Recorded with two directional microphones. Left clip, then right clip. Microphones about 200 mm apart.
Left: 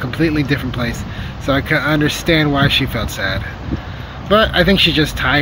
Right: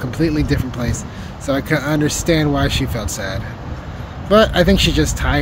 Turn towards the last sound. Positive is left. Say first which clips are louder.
# left 4 dB
turn(degrees=-15)  # may be behind; listen again after turning